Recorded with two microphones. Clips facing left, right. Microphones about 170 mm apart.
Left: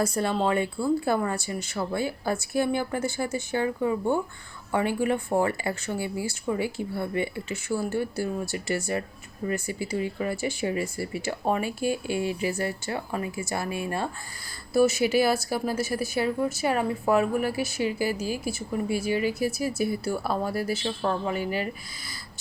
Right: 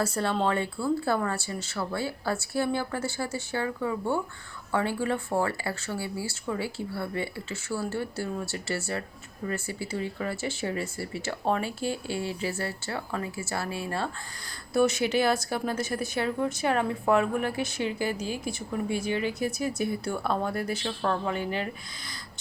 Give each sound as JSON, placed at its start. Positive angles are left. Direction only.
{"t": 0.0, "sound": "speech", "side_deg": 15}